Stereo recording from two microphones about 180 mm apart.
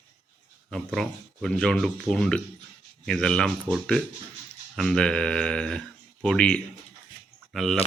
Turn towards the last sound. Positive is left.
turn(degrees=0)  # may be behind; listen again after turning